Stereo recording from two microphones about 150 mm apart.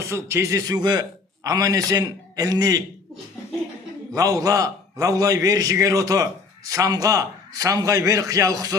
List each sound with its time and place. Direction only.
0.0 s a man's voice: 20° right (ahead or behind)
4.1 s a man's voice: 20° right (ahead or behind)